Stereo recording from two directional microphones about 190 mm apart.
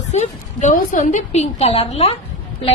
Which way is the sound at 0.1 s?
35° left (ahead or behind).